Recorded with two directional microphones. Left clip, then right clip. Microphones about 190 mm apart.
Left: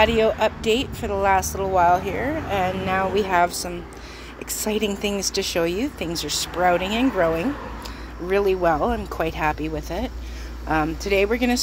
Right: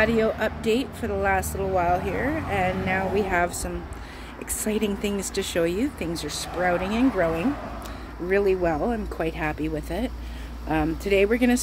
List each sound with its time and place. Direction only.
0.0 s speech: 5° right (ahead or behind)
4.6 s speech: 5° right (ahead or behind)